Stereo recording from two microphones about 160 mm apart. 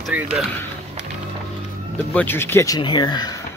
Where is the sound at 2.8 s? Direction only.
30° left (ahead or behind).